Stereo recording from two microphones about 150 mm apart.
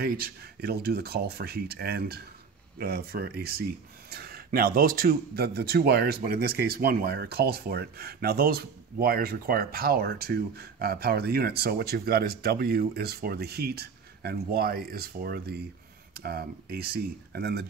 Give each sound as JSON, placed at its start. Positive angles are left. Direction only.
{"t": 0.6, "sound": "speech", "side_deg": -90}